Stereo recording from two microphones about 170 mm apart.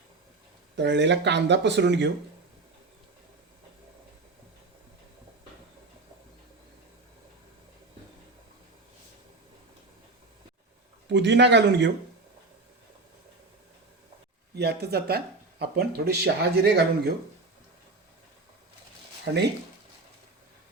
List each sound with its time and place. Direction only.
0.8 s speech: 90° right
11.1 s speech: 90° right
14.5 s speech: 75° right (ahead or behind)
19.2 s speech: 85° right